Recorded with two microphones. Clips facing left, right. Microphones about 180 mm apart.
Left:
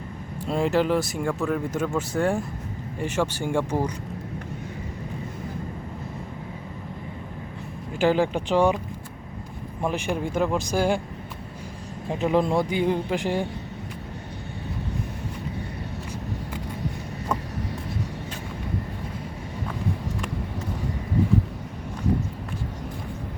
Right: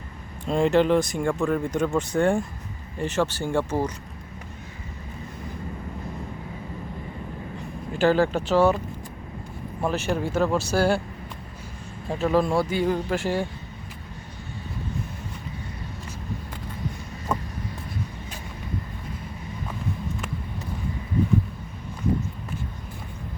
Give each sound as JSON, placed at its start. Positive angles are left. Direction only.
{"t": 0.4, "sound": "speech", "side_deg": 5}
{"t": 7.9, "sound": "speech", "side_deg": 15}
{"t": 9.8, "sound": "speech", "side_deg": 15}
{"t": 12.0, "sound": "speech", "side_deg": 20}